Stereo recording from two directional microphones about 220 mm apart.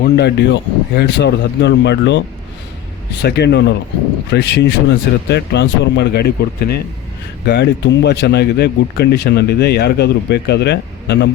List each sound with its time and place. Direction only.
0.0 s speech: 50° left (ahead or behind)